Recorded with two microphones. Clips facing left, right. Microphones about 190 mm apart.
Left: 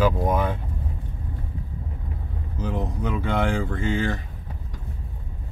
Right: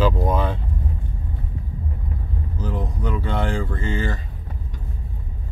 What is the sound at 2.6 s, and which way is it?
Speech, 15° left (ahead or behind).